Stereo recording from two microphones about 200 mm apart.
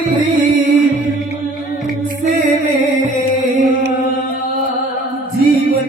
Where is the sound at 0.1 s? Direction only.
40° right (ahead or behind).